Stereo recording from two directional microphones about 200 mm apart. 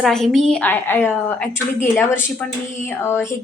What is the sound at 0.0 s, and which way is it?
A woman's voice, centre (ahead or behind).